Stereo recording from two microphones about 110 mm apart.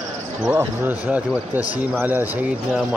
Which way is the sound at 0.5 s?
20° right (ahead or behind).